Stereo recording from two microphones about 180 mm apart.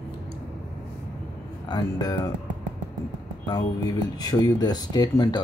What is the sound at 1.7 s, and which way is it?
Speech, 20° left (ahead or behind).